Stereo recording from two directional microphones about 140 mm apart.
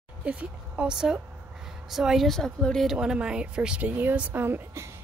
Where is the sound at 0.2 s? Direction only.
10° right (ahead or behind).